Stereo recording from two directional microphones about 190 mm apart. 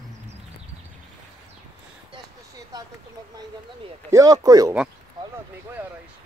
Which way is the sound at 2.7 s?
20° right (ahead or behind).